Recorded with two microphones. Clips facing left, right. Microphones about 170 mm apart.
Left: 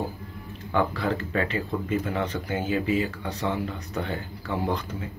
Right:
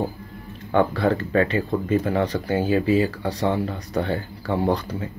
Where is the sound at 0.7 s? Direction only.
35° right (ahead or behind).